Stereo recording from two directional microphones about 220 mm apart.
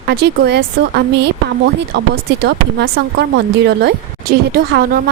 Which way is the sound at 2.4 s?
50° right (ahead or behind).